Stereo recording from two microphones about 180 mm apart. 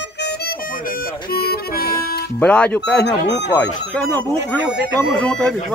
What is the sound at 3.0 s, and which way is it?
Speech, 75° left (ahead or behind).